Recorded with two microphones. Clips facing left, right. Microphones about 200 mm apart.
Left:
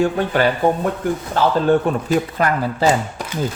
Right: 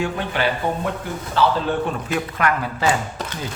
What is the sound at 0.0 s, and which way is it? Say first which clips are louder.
Speech: left 6 dB; 45° left (ahead or behind).